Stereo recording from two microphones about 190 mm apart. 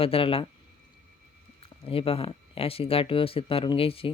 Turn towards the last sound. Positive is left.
turn(degrees=30)  # may be behind; listen again after turning